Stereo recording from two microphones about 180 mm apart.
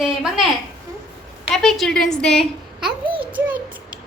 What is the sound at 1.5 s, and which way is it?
Speech, centre (ahead or behind).